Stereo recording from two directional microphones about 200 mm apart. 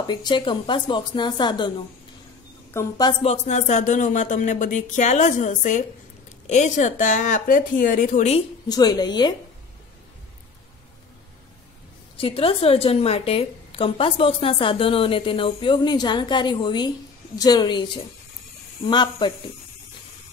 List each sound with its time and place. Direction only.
0.0 s a woman's voice: 20° left (ahead or behind)
2.7 s a woman's voice: 15° left (ahead or behind)
3.1 s speech: 30° left (ahead or behind)
8.6 s a woman's voice: 20° left (ahead or behind)
12.2 s a woman's voice: 25° left (ahead or behind)
18.9 s a woman's voice: 25° left (ahead or behind)